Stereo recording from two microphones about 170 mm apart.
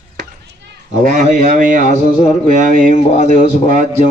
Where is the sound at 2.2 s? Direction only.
45° left (ahead or behind).